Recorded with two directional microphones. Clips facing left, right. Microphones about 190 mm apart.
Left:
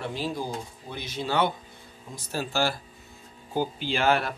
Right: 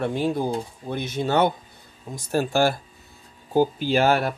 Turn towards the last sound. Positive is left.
turn(degrees=-45)  # may be behind; listen again after turning